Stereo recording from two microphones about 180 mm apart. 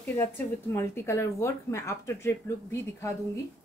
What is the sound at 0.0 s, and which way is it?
Speech, 15° left (ahead or behind).